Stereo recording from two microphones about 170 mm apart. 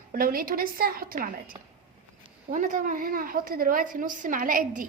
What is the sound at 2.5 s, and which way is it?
A woman's voice, 50° right (ahead or behind).